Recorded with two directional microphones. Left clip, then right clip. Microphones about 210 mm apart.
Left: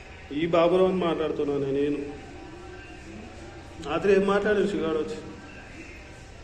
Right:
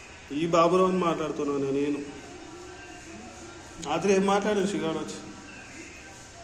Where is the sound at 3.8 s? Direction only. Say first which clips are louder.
Left 2 dB; 60° right (ahead or behind).